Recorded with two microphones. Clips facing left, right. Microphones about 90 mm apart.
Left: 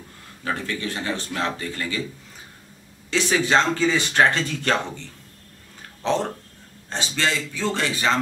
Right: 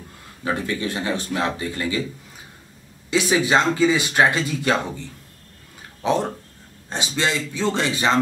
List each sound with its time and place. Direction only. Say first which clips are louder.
0.4 s speech: right 3 dB; 15° right (ahead or behind)
3.1 s speech: right 2 dB; 10° right (ahead or behind)
6.0 s a man's voice: right 2 dB; 10° right (ahead or behind)